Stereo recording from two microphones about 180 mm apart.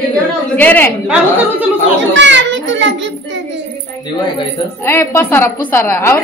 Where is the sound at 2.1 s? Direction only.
90° right.